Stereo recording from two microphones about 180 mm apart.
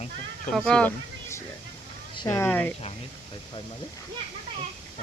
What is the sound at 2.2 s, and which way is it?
Speech, 10° left (ahead or behind).